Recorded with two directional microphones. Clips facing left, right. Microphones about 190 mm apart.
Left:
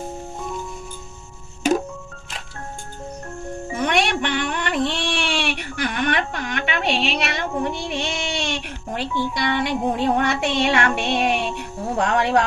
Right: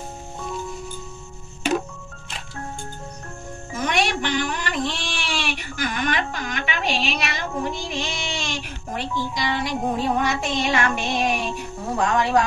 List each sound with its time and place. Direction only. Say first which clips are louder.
3.7 s music: left 2 dB; 60° left (ahead or behind)
7.9 s speech: left 3 dB; 65° left (ahead or behind)
9.9 s music: left 2 dB; 65° left (ahead or behind)